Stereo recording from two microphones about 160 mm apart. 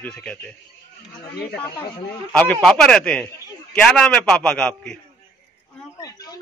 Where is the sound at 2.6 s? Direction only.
5° left (ahead or behind).